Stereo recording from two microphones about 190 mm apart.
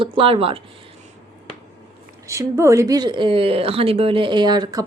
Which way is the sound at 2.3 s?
15° right (ahead or behind).